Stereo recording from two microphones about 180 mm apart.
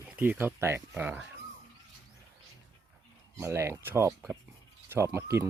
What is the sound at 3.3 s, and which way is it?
Speech, 15° right (ahead or behind).